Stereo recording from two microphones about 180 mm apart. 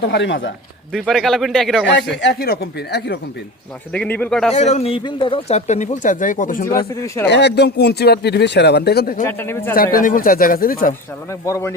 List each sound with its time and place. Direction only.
0.1 s a man's voice: 85° left
0.9 s speech: centre (ahead or behind)
1.9 s speech: 75° left (ahead or behind)
3.9 s speech: 10° left (ahead or behind)
4.5 s speech: 40° left (ahead or behind)
7.3 s speech: 70° left (ahead or behind)
9.2 s speech: 15° left (ahead or behind)
9.7 s speech: 50° left (ahead or behind)
11.3 s speech: 15° left (ahead or behind)